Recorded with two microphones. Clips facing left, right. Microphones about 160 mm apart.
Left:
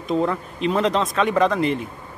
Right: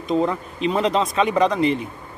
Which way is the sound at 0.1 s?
Centre (ahead or behind).